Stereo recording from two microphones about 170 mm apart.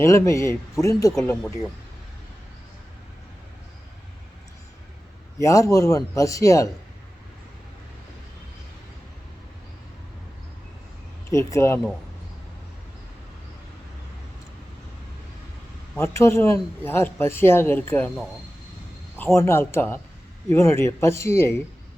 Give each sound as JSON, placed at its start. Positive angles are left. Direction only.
{"t": 0.0, "sound": "speech", "side_deg": 15}
{"t": 1.1, "sound": "speech", "side_deg": 5}
{"t": 5.4, "sound": "speech", "side_deg": 20}
{"t": 11.3, "sound": "speech", "side_deg": 15}
{"t": 16.0, "sound": "speech", "side_deg": 15}
{"t": 19.1, "sound": "speech", "side_deg": 15}